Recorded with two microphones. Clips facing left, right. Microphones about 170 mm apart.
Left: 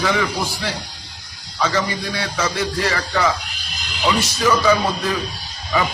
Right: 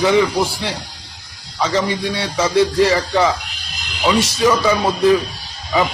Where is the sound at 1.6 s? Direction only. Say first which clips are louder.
Right 3 dB; 25° right (ahead or behind).